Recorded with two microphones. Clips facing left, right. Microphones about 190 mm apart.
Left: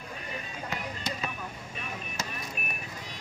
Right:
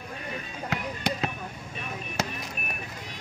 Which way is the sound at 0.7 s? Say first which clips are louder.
Right 6 dB; 75° right (ahead or behind).